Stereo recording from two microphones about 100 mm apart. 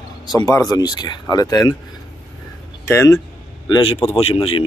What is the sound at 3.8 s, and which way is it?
Speech, 75° left (ahead or behind).